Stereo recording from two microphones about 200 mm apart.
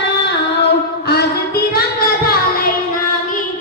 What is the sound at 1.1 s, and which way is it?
Music, 50° left (ahead or behind).